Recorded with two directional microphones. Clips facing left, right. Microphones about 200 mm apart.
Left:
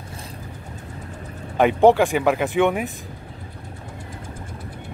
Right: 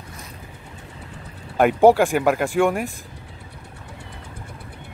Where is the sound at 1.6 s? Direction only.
5° right (ahead or behind).